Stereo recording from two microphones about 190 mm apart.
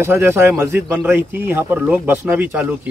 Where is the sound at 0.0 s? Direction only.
10° right (ahead or behind).